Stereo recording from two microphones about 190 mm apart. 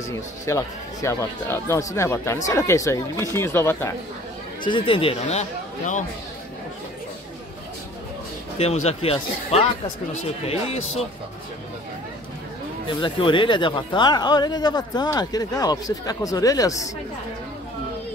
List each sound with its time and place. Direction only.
0.1 s speech: 15° left (ahead or behind)
4.6 s speech: 25° left (ahead or behind)
8.8 s speech: 30° left (ahead or behind)
12.8 s speech: 25° left (ahead or behind)